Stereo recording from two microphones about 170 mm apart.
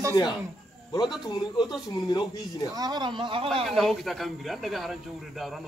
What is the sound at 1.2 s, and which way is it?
Speech, 25° left (ahead or behind).